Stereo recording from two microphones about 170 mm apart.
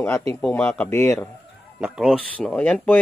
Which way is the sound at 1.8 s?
5° right (ahead or behind).